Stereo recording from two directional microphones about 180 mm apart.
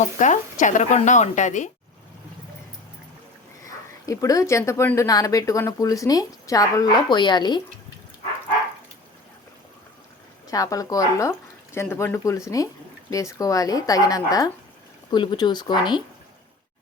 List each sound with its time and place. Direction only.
0.0 s speech: 45° left (ahead or behind)
4.0 s speech: 20° left (ahead or behind)
10.5 s speech: 20° left (ahead or behind)